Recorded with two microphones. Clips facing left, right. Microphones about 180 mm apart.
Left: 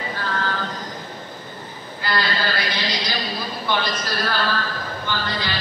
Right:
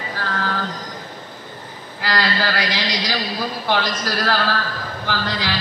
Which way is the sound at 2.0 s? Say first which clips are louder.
Right 2 dB; 90° right.